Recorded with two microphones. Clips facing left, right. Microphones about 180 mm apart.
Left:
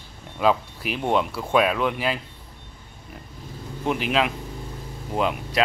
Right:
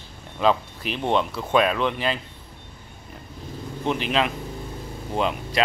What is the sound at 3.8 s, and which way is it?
Speech, 5° left (ahead or behind).